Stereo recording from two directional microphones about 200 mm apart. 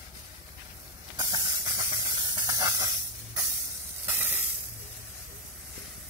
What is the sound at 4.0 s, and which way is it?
Hiss, 10° right (ahead or behind).